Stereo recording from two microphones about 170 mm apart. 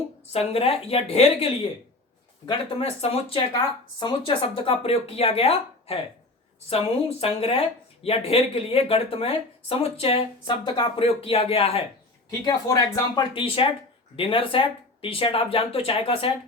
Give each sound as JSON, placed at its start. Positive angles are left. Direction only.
{"t": 0.3, "sound": "speech", "side_deg": 35}
{"t": 2.5, "sound": "speech", "side_deg": 35}
{"t": 12.5, "sound": "speech", "side_deg": 25}